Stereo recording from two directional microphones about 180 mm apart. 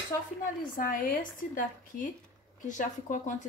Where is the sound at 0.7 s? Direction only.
50° left (ahead or behind).